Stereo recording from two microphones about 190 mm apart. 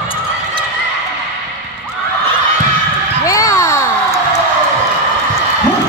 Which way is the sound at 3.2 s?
15° left (ahead or behind).